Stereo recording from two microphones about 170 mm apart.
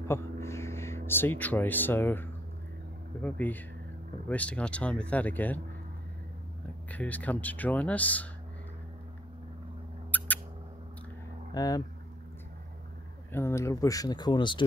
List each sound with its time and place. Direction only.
0.1 s speech: 15° left (ahead or behind)
6.9 s speech: 10° left (ahead or behind)
10.1 s mouse: 10° left (ahead or behind)
11.5 s speech: 20° left (ahead or behind)
13.3 s speech: 15° left (ahead or behind)